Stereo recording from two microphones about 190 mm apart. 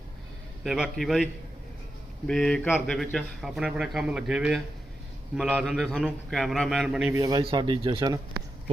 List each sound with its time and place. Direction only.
0.6 s a man's voice: centre (ahead or behind)
2.2 s a man's voice: 5° left (ahead or behind)
7.1 s speech: 20° right (ahead or behind)